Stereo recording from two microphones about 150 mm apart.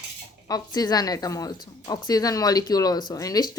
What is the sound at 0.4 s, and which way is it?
Speech, 25° left (ahead or behind).